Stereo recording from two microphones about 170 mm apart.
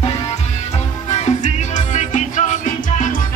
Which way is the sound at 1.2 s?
45° left (ahead or behind).